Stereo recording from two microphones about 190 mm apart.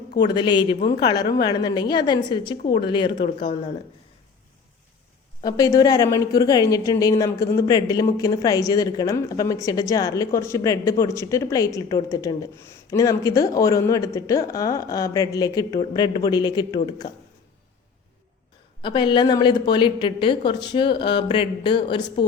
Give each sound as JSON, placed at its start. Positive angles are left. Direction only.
{"t": 0.3, "sound": "speech", "side_deg": 25}
{"t": 5.4, "sound": "speech", "side_deg": 20}
{"t": 18.8, "sound": "speech", "side_deg": 25}